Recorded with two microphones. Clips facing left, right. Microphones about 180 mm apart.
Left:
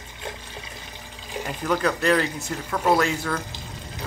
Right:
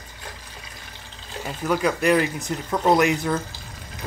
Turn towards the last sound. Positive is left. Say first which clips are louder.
# right 3 dB
turn(degrees=-15)  # may be behind; listen again after turning